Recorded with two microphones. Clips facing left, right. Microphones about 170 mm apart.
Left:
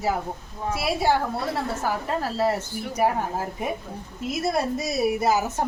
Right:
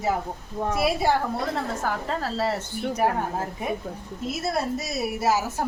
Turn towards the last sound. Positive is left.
turn(degrees=15)  # may be behind; listen again after turning